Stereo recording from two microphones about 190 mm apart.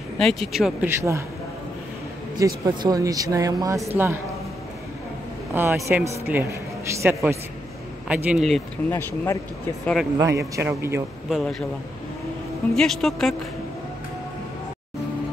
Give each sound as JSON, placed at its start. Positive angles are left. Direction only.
{"t": 0.2, "sound": "speech", "side_deg": 0}
{"t": 0.8, "sound": "speech", "side_deg": -15}
{"t": 2.3, "sound": "speech", "side_deg": -20}
{"t": 5.5, "sound": "a man's voice", "side_deg": -10}
{"t": 8.1, "sound": "speech", "side_deg": -5}
{"t": 8.9, "sound": "speech", "side_deg": 15}
{"t": 10.1, "sound": "speech", "side_deg": -15}
{"t": 11.2, "sound": "speech", "side_deg": 0}
{"t": 12.7, "sound": "speech", "side_deg": 0}